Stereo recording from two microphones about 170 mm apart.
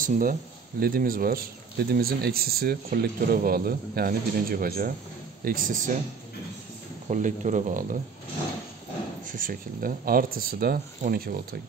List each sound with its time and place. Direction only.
0.0 s speech: 55° right (ahead or behind)
7.1 s speech: 45° right (ahead or behind)
9.2 s speech: 50° right (ahead or behind)